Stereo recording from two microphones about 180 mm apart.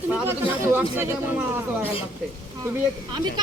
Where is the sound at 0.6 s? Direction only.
10° right (ahead or behind).